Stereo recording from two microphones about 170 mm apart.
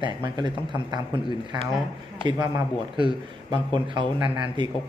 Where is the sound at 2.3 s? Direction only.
25° right (ahead or behind).